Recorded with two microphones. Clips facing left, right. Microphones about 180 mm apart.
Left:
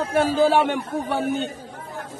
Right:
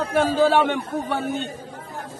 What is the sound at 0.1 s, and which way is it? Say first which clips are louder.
A woman's voice: even; 10° left (ahead or behind).